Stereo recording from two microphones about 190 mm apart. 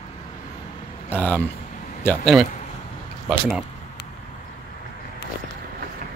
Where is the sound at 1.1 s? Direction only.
10° left (ahead or behind).